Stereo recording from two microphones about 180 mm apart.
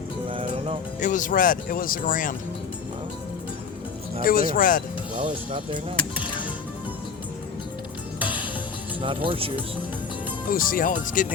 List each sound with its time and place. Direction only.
0.3 s music: 30° right (ahead or behind)
0.9 s speech: 45° left (ahead or behind)
4.2 s speech: 50° left (ahead or behind)
5.1 s speech: 50° right (ahead or behind)
6.1 s music: 10° right (ahead or behind)
8.2 s music: 10° right (ahead or behind)
9.0 s speech: 30° right (ahead or behind)
10.5 s speech: 50° left (ahead or behind)